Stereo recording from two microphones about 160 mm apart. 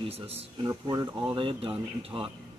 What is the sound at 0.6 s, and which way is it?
Speech, 25° right (ahead or behind).